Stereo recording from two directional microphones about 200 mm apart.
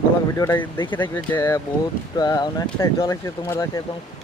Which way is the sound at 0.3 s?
10° left (ahead or behind).